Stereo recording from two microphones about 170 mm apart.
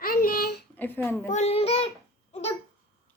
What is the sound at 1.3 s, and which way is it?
Speech, 40° left (ahead or behind).